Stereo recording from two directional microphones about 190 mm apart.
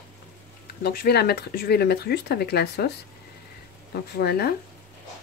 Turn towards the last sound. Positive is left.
turn(degrees=55)  # may be behind; listen again after turning